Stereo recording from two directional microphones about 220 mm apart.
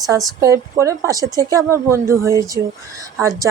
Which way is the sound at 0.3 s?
15° right (ahead or behind).